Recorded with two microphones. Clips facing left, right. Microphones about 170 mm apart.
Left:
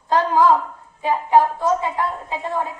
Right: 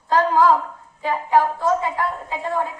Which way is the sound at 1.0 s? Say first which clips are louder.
Left 2 dB; 20° left (ahead or behind).